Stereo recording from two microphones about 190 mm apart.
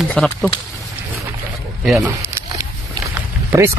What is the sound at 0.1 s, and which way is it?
Speech, 5° left (ahead or behind).